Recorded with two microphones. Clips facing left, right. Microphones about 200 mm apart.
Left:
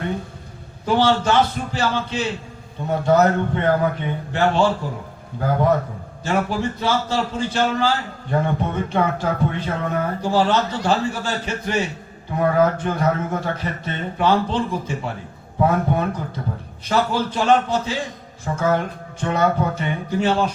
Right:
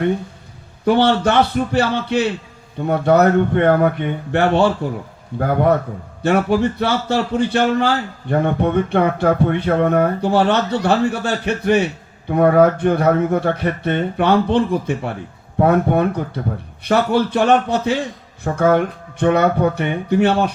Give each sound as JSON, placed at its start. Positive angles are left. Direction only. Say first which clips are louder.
{"t": 0.9, "sound": "a man's voice", "louder": "right 3 dB", "side_deg": -60}
{"t": 6.2, "sound": "a man's voice", "louder": "right 6 dB", "side_deg": -60}